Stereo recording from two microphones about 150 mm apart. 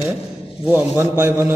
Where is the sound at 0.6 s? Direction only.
15° right (ahead or behind).